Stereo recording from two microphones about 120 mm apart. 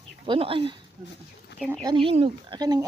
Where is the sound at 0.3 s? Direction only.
50° right (ahead or behind).